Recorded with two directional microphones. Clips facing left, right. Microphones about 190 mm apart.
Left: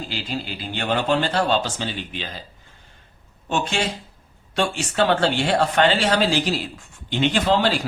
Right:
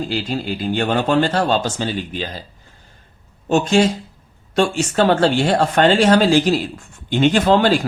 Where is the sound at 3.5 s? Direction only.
40° right (ahead or behind).